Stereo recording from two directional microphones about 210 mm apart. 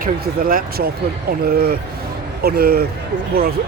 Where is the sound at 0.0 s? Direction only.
45° right (ahead or behind).